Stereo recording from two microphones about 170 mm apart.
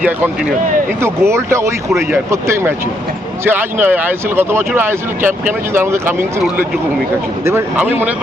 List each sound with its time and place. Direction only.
1.0 s speech: 15° right (ahead or behind)
7.4 s speech: 15° right (ahead or behind)